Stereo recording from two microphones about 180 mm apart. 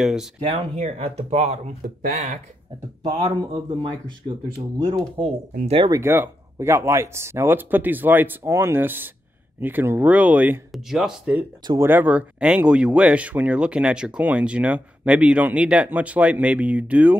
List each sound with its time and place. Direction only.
0.0 s speech: 5° right (ahead or behind)
0.5 s speech: 40° right (ahead or behind)
2.0 s speech: 50° right (ahead or behind)
3.0 s speech: 35° right (ahead or behind)
4.8 s speech: 30° right (ahead or behind)
5.9 s speech: 15° right (ahead or behind)
11.6 s speech: 15° right (ahead or behind)